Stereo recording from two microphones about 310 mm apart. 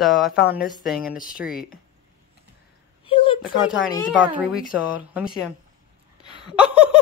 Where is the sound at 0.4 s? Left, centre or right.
Left.